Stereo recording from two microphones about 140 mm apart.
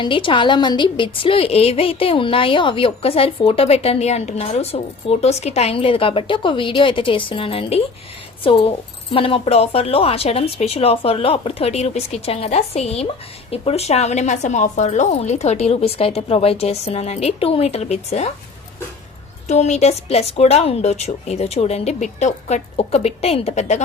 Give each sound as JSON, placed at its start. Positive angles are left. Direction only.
{"t": 0.0, "sound": "a woman's voice", "side_deg": 35}
{"t": 19.5, "sound": "speech", "side_deg": 55}